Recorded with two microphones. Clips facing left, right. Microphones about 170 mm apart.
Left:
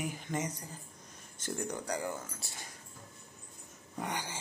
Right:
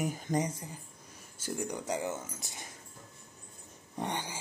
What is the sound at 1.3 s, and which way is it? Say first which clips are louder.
Speech: right 1 dB; 10° right (ahead or behind).